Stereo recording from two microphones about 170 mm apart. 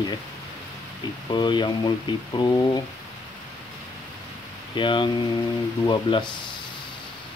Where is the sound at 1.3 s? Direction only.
25° left (ahead or behind).